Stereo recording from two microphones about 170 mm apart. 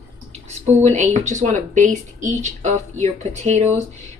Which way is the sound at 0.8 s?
45° right (ahead or behind).